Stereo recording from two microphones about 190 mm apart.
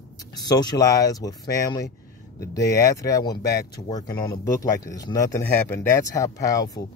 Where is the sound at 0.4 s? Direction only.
20° left (ahead or behind).